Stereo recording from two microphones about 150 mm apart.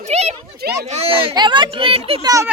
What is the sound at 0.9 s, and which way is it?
A child's voice, 40° right (ahead or behind).